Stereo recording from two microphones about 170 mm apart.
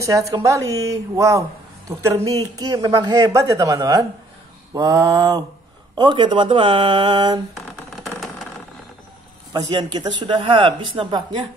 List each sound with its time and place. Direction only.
0.0 s a woman's voice: 20° right (ahead or behind)
9.5 s a woman's voice: 25° right (ahead or behind)